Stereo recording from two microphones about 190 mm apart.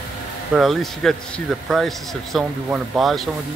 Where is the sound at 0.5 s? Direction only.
Centre (ahead or behind).